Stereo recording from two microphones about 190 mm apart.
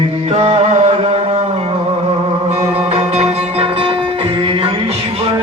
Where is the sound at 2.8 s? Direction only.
30° right (ahead or behind).